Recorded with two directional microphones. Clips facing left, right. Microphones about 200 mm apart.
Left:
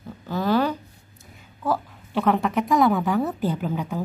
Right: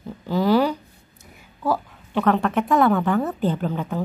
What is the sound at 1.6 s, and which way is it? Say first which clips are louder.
Speech: right 2 dB; centre (ahead or behind).